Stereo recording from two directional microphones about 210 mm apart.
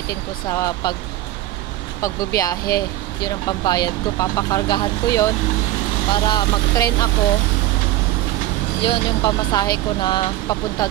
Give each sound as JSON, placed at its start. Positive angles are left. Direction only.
{"t": 0.1, "sound": "speech", "side_deg": 15}
{"t": 2.0, "sound": "speech", "side_deg": 15}
{"t": 8.8, "sound": "speech", "side_deg": 20}